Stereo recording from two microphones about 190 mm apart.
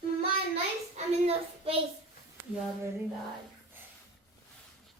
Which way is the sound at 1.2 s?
30° right (ahead or behind).